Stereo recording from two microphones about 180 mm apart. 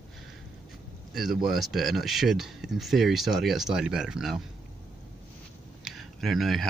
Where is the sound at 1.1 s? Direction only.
Centre (ahead or behind).